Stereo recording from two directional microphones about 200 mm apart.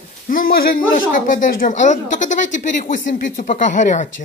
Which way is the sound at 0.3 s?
45° left (ahead or behind).